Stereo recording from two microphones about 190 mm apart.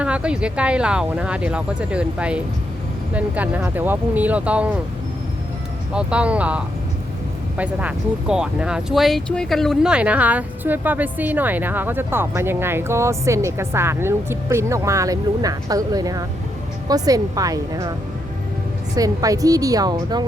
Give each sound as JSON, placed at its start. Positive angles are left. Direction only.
{"t": 0.0, "sound": "speech", "side_deg": -5}
{"t": 5.9, "sound": "a woman's voice", "side_deg": -5}
{"t": 18.9, "sound": "a woman's voice", "side_deg": -20}